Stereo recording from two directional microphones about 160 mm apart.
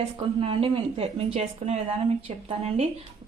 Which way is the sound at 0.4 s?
35° right (ahead or behind).